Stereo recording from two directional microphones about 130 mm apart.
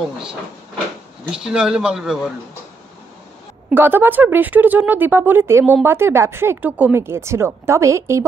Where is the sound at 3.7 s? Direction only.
15° right (ahead or behind).